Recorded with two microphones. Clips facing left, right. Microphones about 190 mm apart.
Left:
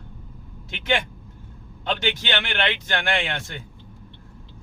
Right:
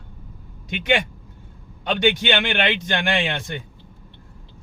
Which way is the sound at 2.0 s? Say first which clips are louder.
Right 11 dB; 15° right (ahead or behind).